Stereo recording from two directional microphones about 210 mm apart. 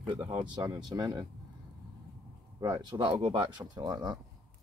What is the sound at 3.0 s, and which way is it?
Speech, 25° right (ahead or behind).